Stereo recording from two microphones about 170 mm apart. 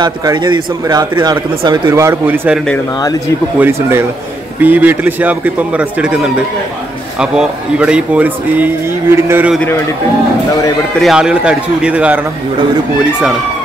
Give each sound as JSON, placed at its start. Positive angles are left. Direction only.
{"t": 0.0, "sound": "speech", "side_deg": -25}
{"t": 11.0, "sound": "a man's voice", "side_deg": -5}